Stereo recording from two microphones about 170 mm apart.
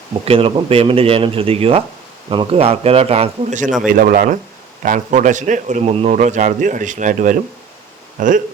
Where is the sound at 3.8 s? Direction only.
55° right (ahead or behind).